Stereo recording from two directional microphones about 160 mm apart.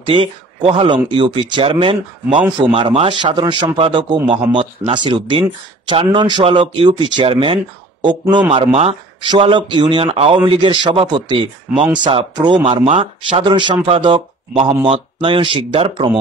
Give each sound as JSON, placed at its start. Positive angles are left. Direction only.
{"t": 0.0, "sound": "a man's voice", "side_deg": -35}
{"t": 13.3, "sound": "a man's voice", "side_deg": -30}